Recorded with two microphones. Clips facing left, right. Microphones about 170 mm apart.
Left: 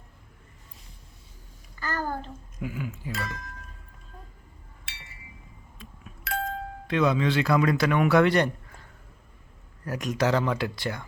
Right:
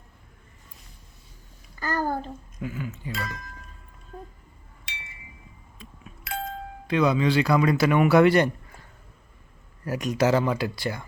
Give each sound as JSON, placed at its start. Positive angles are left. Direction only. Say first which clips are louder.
{"t": 1.8, "sound": "babbling", "louder": "right 4 dB", "side_deg": -40}
{"t": 2.6, "sound": "a man's voice", "louder": "even", "side_deg": 5}
{"t": 5.8, "sound": "doorbell", "louder": "left 2 dB", "side_deg": 0}
{"t": 6.8, "sound": "a man's voice", "louder": "right 2 dB", "side_deg": 0}
{"t": 9.8, "sound": "a man's voice", "louder": "right 3 dB", "side_deg": -5}